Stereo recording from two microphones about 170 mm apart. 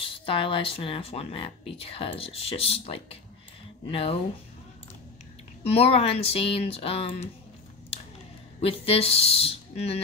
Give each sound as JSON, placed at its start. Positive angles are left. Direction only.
{"t": 0.0, "sound": "speech", "side_deg": 30}
{"t": 5.6, "sound": "speech", "side_deg": 35}
{"t": 8.5, "sound": "speech", "side_deg": 35}